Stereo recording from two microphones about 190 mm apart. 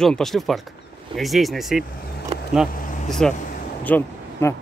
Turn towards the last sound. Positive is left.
turn(degrees=10)  # may be behind; listen again after turning